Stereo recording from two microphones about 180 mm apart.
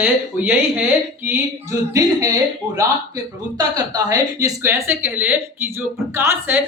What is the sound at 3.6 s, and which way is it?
Speech, 20° right (ahead or behind).